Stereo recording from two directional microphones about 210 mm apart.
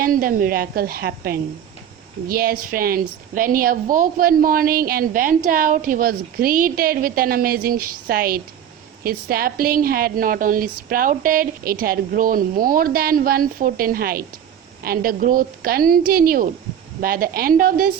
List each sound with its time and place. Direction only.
0.0 s a woman's voice: 40° right (ahead or behind)